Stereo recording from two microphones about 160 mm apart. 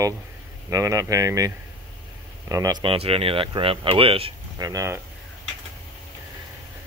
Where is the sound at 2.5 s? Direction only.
25° right (ahead or behind).